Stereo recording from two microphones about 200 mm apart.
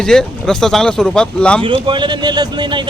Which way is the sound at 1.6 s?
25° right (ahead or behind).